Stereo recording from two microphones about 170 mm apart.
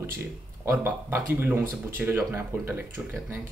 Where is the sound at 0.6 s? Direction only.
10° right (ahead or behind).